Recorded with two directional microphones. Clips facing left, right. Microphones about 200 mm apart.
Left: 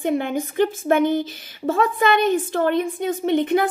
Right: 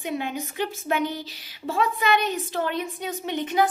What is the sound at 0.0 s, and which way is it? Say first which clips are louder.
Speech: left 7 dB; 50° left (ahead or behind).